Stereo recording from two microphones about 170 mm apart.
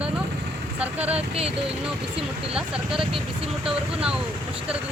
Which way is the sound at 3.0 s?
30° right (ahead or behind).